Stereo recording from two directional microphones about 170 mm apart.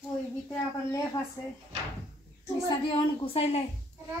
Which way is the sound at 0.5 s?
15° left (ahead or behind).